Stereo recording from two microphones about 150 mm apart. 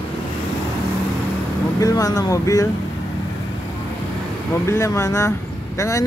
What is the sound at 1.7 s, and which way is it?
Speech, 20° left (ahead or behind).